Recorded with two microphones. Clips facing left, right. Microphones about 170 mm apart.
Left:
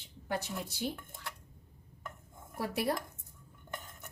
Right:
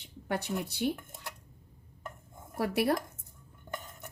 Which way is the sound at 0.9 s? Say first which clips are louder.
Right 4 dB; 20° right (ahead or behind).